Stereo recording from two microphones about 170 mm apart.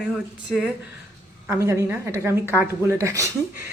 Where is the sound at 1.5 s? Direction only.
15° right (ahead or behind).